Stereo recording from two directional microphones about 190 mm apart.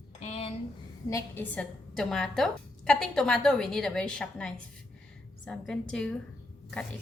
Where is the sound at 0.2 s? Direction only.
35° left (ahead or behind).